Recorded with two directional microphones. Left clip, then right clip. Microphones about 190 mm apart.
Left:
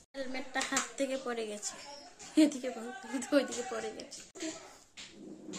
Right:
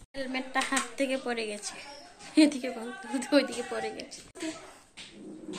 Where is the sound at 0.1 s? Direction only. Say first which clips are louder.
Right 6 dB; 10° left (ahead or behind).